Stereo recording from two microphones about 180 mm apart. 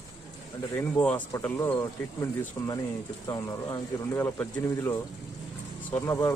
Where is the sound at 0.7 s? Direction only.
10° left (ahead or behind).